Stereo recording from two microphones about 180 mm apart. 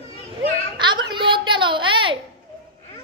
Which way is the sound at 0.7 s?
25° right (ahead or behind).